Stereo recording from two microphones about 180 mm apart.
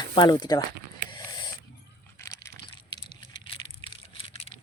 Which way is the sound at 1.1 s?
25° left (ahead or behind).